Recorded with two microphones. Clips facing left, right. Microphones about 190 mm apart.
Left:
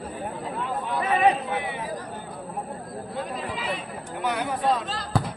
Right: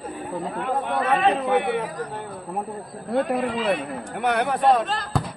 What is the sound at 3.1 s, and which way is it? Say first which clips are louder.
Speech: right 11 dB; 60° right (ahead or behind).